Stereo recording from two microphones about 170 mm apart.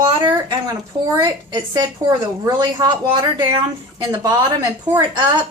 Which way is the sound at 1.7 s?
25° right (ahead or behind).